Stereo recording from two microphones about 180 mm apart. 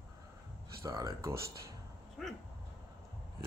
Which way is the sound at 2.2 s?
Centre (ahead or behind).